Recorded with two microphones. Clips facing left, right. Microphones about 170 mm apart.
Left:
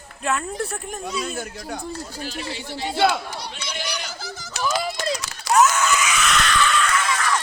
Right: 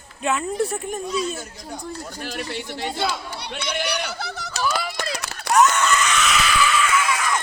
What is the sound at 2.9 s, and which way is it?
Speech, 65° left (ahead or behind).